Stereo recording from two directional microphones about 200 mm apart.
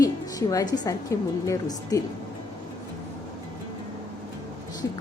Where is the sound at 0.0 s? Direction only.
20° left (ahead or behind).